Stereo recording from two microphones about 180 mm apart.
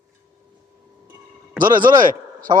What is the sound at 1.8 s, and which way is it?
Speech, 25° right (ahead or behind).